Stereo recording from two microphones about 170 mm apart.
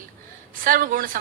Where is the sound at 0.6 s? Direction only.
55° right (ahead or behind).